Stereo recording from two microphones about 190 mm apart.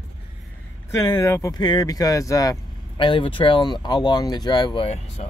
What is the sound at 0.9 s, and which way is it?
Speech, 20° left (ahead or behind).